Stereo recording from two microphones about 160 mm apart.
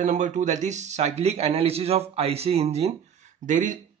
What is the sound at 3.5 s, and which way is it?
Speech, 50° right (ahead or behind).